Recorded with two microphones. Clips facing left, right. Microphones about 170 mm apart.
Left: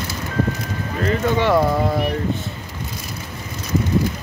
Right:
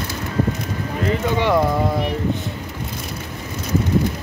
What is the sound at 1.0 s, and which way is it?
Speech, 15° right (ahead or behind).